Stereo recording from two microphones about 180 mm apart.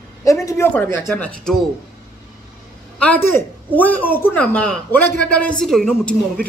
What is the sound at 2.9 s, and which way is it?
Speech, 10° left (ahead or behind).